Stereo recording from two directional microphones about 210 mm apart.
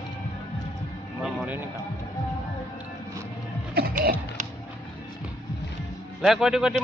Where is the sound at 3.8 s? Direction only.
45° right (ahead or behind).